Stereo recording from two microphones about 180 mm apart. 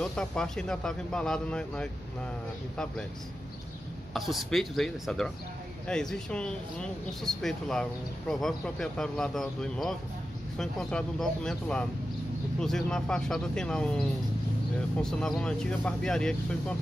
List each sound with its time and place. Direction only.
0.0 s speech: 5° left (ahead or behind)
4.1 s speech: centre (ahead or behind)